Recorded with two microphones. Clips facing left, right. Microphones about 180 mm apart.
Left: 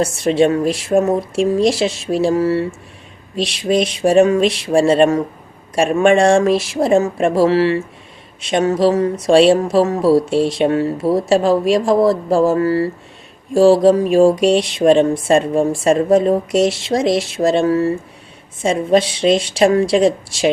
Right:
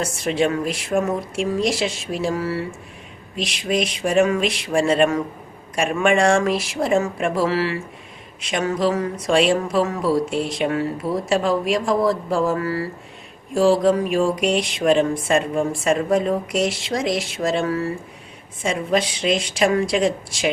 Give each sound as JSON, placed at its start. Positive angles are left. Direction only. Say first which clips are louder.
{"t": 0.0, "sound": "speech", "louder": "left 7 dB", "side_deg": 25}